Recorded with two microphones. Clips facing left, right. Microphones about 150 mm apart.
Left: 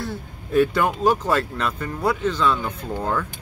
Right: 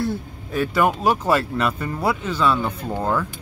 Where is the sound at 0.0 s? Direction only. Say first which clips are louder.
Right 6 dB; 5° right (ahead or behind).